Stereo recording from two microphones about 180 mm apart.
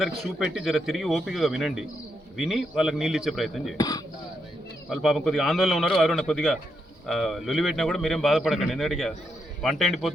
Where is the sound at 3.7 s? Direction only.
20° left (ahead or behind).